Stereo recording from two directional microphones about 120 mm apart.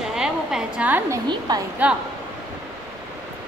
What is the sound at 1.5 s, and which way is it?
Speech, 35° right (ahead or behind).